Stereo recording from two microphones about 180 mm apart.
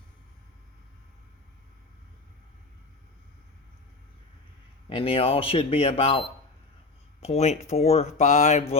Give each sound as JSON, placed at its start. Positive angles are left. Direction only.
{"t": 4.9, "sound": "speech", "side_deg": 30}